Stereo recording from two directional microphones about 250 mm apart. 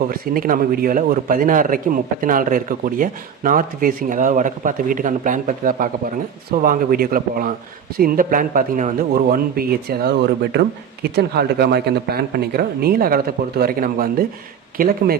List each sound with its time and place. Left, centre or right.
0.1 s a man's voice: right